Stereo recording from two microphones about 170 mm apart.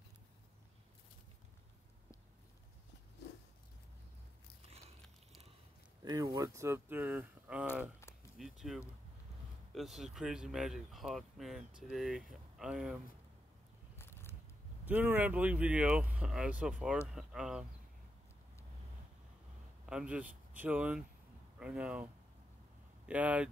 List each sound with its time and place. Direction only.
6.0 s speech: 25° right (ahead or behind); by 13.0 s 5° right (ahead or behind)
13.9 s scissors: 15° left (ahead or behind)
14.9 s speech: 10° right (ahead or behind)
19.9 s speech: 5° right (ahead or behind)